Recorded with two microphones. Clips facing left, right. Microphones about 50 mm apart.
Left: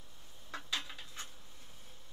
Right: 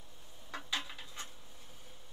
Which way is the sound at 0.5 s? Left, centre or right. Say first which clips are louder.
Right 1 dB; centre.